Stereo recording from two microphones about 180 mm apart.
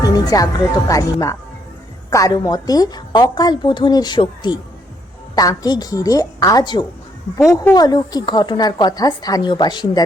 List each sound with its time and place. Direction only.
0.0 s music: 20° left (ahead or behind)
0.9 s a woman's voice: 15° left (ahead or behind)